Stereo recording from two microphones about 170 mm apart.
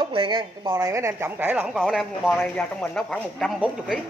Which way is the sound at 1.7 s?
Centre (ahead or behind).